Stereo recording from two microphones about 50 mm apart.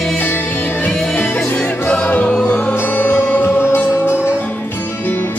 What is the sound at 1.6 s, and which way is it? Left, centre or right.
Music, left.